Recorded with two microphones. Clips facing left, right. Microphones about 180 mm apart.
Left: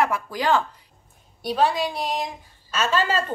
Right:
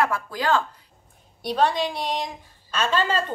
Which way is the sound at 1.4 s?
5° left (ahead or behind).